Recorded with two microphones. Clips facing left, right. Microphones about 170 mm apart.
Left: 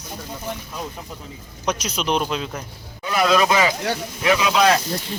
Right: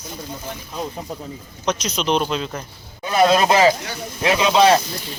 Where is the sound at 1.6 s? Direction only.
10° left (ahead or behind).